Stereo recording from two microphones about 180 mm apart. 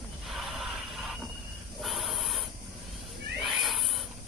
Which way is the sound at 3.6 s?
Centre (ahead or behind).